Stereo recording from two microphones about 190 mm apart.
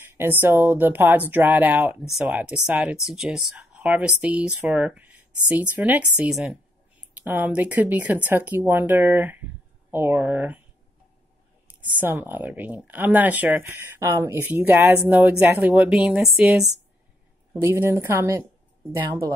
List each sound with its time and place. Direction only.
0.0 s speech: 10° right (ahead or behind)
11.8 s speech: 10° right (ahead or behind)